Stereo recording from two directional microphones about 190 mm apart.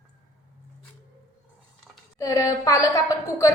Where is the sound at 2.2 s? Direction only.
15° left (ahead or behind).